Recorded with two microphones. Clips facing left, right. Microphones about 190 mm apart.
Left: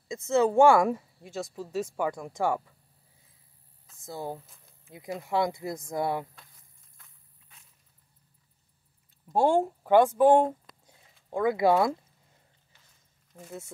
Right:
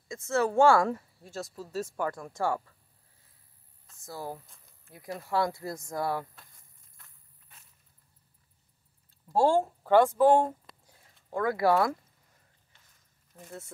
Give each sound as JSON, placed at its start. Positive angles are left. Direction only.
{"t": 0.1, "sound": "speech", "side_deg": 20}
{"t": 4.0, "sound": "speech", "side_deg": 20}
{"t": 7.0, "sound": "walk", "side_deg": 0}
{"t": 9.3, "sound": "speech", "side_deg": 15}
{"t": 13.3, "sound": "speech", "side_deg": 0}